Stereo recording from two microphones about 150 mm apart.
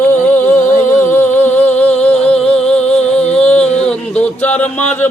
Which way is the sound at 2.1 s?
45° left (ahead or behind).